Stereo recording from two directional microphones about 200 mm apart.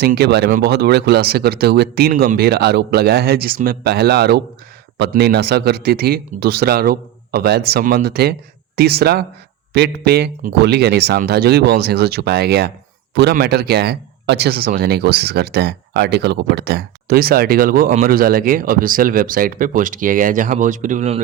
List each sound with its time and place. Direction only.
0.0 s speech: 55° right (ahead or behind); by 21.2 s 35° right (ahead or behind)